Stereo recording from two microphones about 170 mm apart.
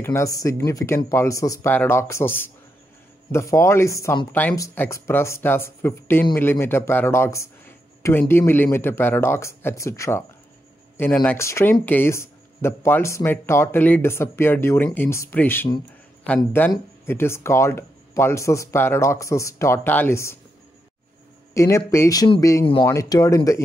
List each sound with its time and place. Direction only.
0.0 s speech: 15° left (ahead or behind)
21.5 s speech: 15° left (ahead or behind)